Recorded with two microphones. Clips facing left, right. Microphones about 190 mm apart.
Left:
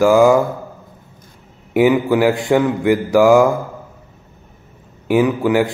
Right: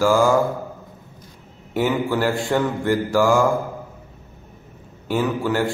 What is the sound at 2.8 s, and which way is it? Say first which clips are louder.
Speech: left 6 dB; 20° left (ahead or behind).